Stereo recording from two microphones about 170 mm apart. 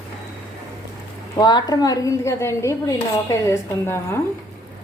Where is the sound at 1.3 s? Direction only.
25° left (ahead or behind).